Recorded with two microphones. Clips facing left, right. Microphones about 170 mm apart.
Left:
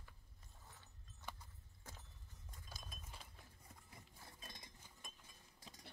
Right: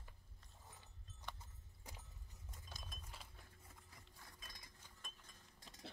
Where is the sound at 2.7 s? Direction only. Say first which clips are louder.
Even; centre (ahead or behind).